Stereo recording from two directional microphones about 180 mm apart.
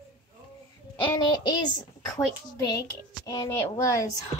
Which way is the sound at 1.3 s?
25° left (ahead or behind).